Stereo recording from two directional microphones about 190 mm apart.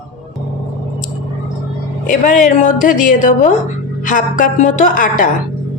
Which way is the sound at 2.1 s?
45° left (ahead or behind).